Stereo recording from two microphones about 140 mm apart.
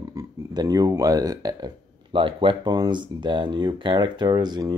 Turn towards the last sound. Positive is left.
turn(degrees=-30)  # may be behind; listen again after turning